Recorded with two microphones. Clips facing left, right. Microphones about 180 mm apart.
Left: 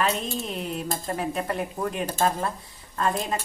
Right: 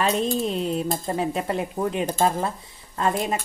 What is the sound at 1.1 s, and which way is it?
Speech, 25° right (ahead or behind).